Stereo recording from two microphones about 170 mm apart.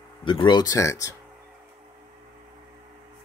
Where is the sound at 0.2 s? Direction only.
30° left (ahead or behind).